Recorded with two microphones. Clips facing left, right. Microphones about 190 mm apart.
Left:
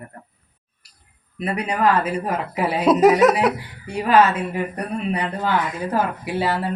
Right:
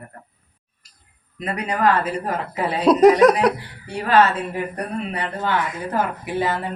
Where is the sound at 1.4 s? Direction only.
10° left (ahead or behind).